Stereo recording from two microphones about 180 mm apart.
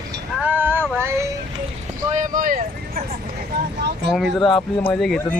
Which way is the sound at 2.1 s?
45° right (ahead or behind).